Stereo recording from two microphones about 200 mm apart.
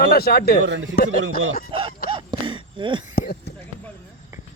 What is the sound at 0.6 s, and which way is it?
Speech, 70° right (ahead or behind).